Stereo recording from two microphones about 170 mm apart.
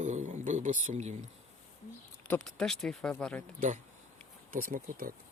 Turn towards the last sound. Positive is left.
turn(degrees=-55)  # may be behind; listen again after turning